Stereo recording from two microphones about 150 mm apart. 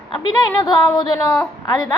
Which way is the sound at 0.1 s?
30° left (ahead or behind).